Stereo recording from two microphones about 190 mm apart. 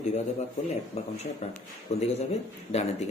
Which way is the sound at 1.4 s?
35° left (ahead or behind).